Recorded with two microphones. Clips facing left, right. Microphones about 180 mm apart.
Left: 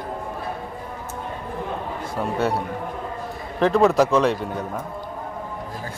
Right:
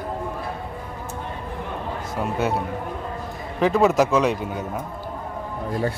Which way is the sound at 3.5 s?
5° right (ahead or behind).